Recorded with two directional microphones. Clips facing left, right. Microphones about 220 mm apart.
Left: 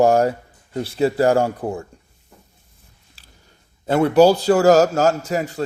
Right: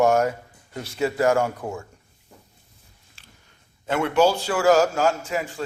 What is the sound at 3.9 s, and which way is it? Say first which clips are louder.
A man's voice: left 6 dB; 35° left (ahead or behind).